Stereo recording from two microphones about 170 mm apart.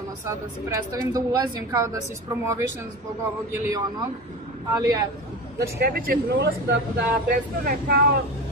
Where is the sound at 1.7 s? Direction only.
15° right (ahead or behind).